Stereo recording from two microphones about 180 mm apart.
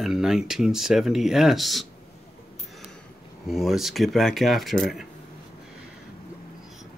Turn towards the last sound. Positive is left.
turn(degrees=0)  # may be behind; listen again after turning